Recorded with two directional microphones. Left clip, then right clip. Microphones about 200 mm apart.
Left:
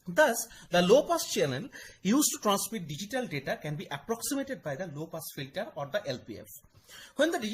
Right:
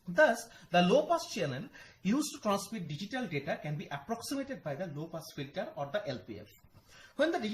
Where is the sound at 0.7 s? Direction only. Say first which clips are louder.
Left 4 dB; 55° left (ahead or behind).